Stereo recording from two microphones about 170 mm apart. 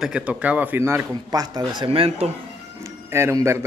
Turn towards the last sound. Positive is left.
turn(degrees=-15)  # may be behind; listen again after turning